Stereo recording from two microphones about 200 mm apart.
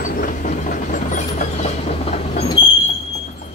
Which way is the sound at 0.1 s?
40° left (ahead or behind).